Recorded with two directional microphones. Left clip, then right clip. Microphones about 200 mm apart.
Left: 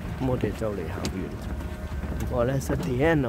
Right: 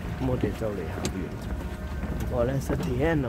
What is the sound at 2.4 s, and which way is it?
Speech, 30° left (ahead or behind).